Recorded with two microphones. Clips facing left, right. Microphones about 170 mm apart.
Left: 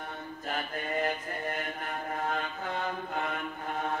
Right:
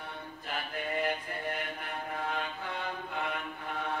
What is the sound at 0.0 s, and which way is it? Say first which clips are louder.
Mantra: left 4 dB; 45° left (ahead or behind).